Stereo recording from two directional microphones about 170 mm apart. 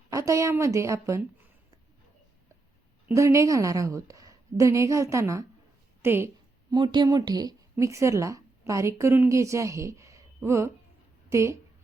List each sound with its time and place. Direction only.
0.1 s a woman's voice: 20° right (ahead or behind)
3.2 s a woman's voice: 15° right (ahead or behind)
6.0 s a sound: 15° right (ahead or behind)
6.7 s a woman's voice: 25° right (ahead or behind)